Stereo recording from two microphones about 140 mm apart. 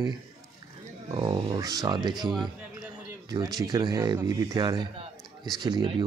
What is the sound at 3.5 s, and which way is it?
Speech, 25° right (ahead or behind).